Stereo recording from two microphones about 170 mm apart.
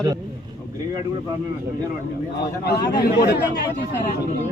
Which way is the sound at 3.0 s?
70° left (ahead or behind).